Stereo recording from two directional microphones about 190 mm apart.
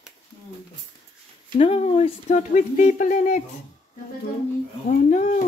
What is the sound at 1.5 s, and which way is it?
Speech, 30° left (ahead or behind).